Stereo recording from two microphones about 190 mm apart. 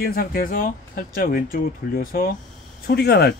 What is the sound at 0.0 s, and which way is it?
Speech, 50° left (ahead or behind).